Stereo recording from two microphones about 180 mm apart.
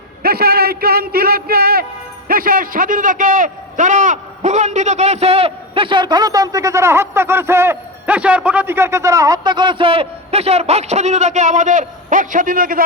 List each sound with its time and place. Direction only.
0.2 s a man's voice: 60° right (ahead or behind)